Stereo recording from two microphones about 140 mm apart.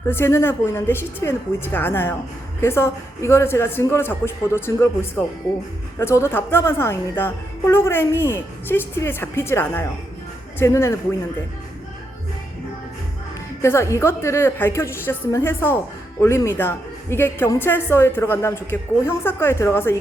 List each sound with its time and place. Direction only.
0.1 s a woman's voice: 15° left (ahead or behind)
6.0 s a woman's voice: 20° left (ahead or behind)
13.6 s a woman's voice: 20° left (ahead or behind)